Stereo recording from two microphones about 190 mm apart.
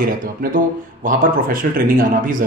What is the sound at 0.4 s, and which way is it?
Speech, 45° right (ahead or behind).